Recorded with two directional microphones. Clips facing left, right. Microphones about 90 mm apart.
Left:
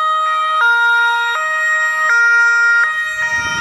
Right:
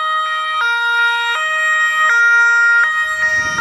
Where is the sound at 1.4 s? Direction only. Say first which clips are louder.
Even; 15° left (ahead or behind).